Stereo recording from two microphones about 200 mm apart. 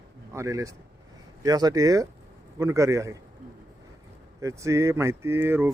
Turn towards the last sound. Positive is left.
turn(degrees=-10)  # may be behind; listen again after turning